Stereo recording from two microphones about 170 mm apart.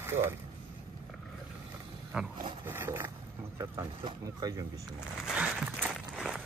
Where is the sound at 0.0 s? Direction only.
15° right (ahead or behind).